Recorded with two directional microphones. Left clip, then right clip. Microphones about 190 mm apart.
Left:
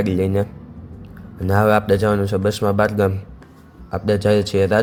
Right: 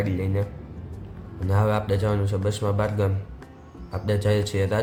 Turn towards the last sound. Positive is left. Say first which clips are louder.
# left 8 dB
turn(degrees=30)  # may be behind; listen again after turning